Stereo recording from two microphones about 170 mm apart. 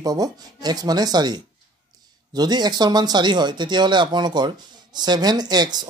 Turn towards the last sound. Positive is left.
turn(degrees=-25)  # may be behind; listen again after turning